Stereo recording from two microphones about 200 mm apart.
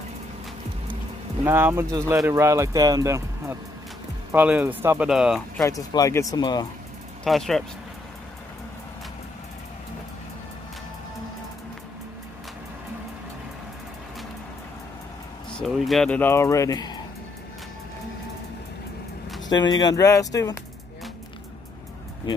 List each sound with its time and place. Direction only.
1.4 s speech: 10° right (ahead or behind)
5.6 s speech: 15° left (ahead or behind)
7.2 s speech: centre (ahead or behind)
15.6 s speech: centre (ahead or behind); by 17.0 s 20° left (ahead or behind)
19.8 s speech: 20° left (ahead or behind)